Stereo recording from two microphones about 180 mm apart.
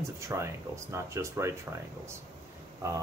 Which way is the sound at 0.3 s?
15° right (ahead or behind).